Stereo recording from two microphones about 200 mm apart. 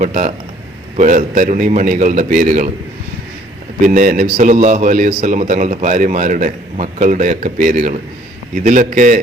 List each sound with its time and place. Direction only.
0.0 s a man's voice: 40° right (ahead or behind)
3.8 s a man's voice: 40° right (ahead or behind)